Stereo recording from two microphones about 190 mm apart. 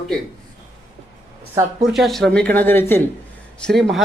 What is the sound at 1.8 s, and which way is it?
Speech, centre (ahead or behind).